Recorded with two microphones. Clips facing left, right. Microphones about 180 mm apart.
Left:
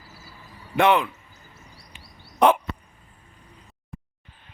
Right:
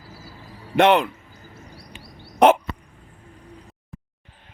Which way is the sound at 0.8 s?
80° right.